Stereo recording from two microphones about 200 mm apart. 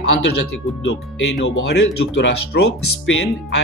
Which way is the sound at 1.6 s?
60° left (ahead or behind).